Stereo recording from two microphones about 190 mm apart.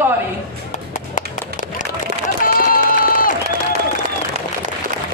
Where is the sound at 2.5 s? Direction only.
45° left (ahead or behind).